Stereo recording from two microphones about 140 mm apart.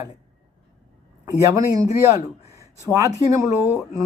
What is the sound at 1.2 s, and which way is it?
Speech, 25° right (ahead or behind).